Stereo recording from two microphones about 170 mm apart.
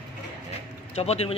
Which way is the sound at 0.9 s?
35° left (ahead or behind).